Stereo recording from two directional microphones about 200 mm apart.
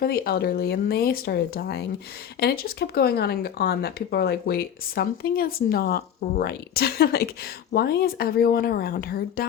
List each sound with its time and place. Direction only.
0.0 s speech: 50° left (ahead or behind)